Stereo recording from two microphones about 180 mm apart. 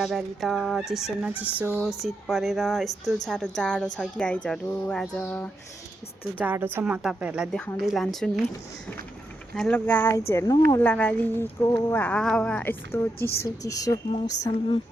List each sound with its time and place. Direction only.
0.0 s speech: centre (ahead or behind)
6.4 s speech: 10° right (ahead or behind)
9.6 s speech: 5° left (ahead or behind)